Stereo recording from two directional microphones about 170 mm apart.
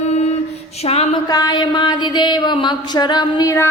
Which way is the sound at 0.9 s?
35° left (ahead or behind).